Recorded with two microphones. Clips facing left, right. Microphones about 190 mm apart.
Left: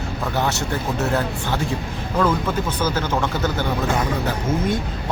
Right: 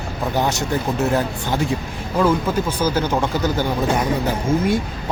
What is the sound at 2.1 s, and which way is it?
Speech, 10° right (ahead or behind).